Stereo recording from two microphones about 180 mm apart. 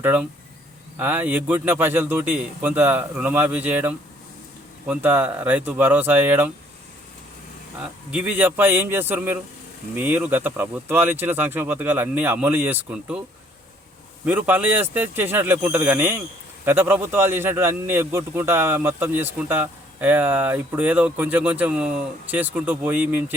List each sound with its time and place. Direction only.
0.0 s speech: 10° right (ahead or behind)
7.8 s speech: 10° right (ahead or behind)
14.3 s speech: 10° right (ahead or behind)